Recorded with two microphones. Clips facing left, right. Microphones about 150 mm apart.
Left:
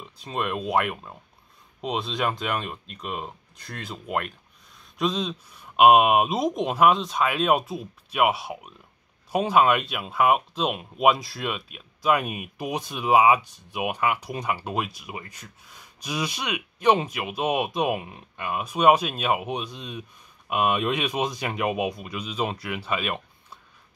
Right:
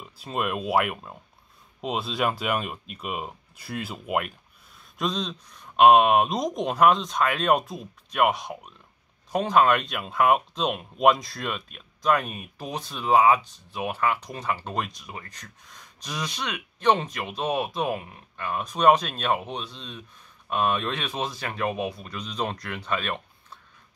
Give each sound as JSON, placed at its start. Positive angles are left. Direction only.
{"t": 0.0, "sound": "speech", "side_deg": -5}